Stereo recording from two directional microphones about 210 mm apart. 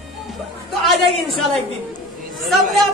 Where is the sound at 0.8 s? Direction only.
Centre (ahead or behind).